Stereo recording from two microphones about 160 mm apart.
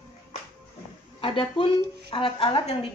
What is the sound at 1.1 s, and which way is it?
A woman's voice, 30° left (ahead or behind).